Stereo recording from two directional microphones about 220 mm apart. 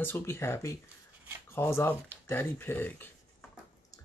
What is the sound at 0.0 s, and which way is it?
Speech, 10° left (ahead or behind).